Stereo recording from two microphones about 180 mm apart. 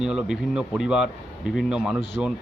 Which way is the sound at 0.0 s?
Centre (ahead or behind).